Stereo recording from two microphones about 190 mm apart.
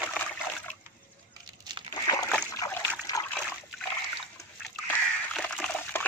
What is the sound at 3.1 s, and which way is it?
Splash, 20° left (ahead or behind).